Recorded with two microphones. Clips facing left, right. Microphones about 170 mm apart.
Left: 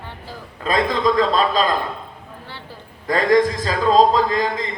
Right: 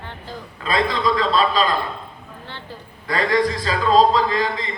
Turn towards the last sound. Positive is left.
turn(degrees=45)  # may be behind; listen again after turning